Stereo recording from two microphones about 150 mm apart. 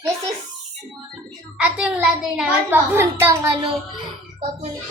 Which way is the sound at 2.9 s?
15° right (ahead or behind).